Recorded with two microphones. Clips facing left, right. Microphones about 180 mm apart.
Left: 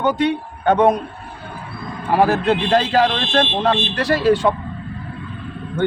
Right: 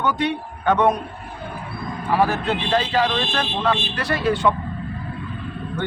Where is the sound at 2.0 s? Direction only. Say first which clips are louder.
Left 5 dB; 40° left (ahead or behind).